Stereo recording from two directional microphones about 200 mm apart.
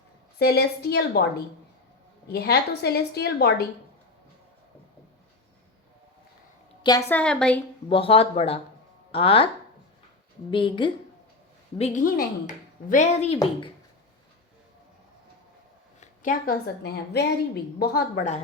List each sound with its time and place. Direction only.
0.3 s a woman's voice: 55° left (ahead or behind)
7.1 s a woman's voice: 5° left (ahead or behind)
7.9 s speech: 25° left (ahead or behind)
10.5 s speech: 25° left (ahead or behind)
11.8 s a woman's voice: 40° left (ahead or behind)
16.0 s a woman's voice: 45° left (ahead or behind)